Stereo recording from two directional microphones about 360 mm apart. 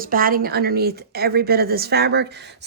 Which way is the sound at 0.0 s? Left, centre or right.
Right.